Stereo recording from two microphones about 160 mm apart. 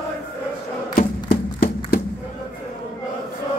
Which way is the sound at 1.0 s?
70° left (ahead or behind).